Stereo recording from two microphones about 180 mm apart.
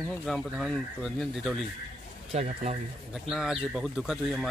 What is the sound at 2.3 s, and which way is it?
Speech, 40° right (ahead or behind).